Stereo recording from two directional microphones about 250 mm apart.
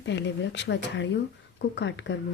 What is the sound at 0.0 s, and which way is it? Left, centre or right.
Speech, left.